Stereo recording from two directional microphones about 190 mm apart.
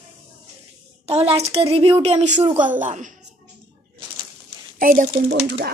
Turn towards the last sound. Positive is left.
turn(degrees=-55)  # may be behind; listen again after turning